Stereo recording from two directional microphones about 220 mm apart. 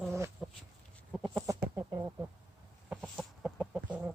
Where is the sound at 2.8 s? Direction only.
5° right (ahead or behind).